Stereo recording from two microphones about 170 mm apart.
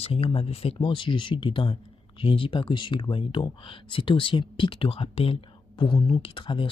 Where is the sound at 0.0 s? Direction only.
35° left (ahead or behind).